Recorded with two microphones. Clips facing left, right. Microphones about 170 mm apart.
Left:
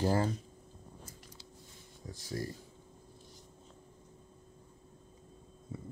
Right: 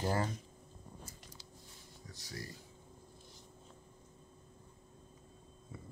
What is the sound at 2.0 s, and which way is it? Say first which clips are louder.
Speech: left 9 dB; 30° left (ahead or behind).